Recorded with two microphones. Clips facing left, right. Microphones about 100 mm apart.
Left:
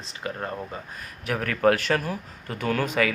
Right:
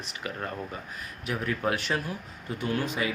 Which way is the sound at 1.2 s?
60° left (ahead or behind).